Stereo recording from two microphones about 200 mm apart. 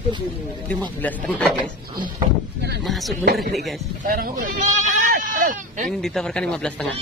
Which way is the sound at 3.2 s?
50° right (ahead or behind).